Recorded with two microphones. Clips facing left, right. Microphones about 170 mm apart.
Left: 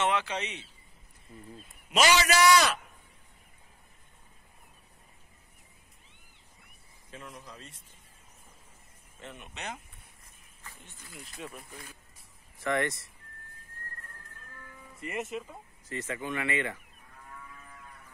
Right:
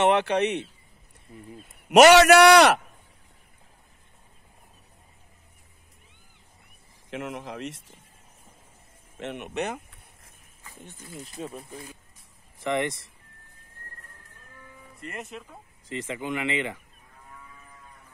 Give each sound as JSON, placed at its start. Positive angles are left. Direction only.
{"t": 0.0, "sound": "speech", "side_deg": -60}
{"t": 1.9, "sound": "a man's voice", "side_deg": -70}
{"t": 7.1, "sound": "speech", "side_deg": -80}
{"t": 9.2, "sound": "a man's voice", "side_deg": -70}
{"t": 11.3, "sound": "speech", "side_deg": -30}
{"t": 15.0, "sound": "speech", "side_deg": 5}
{"t": 15.9, "sound": "speech", "side_deg": -20}